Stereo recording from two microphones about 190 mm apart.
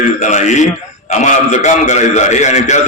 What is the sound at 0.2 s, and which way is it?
A man's voice, 40° left (ahead or behind).